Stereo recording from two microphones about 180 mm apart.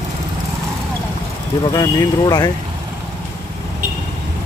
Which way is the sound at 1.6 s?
20° left (ahead or behind).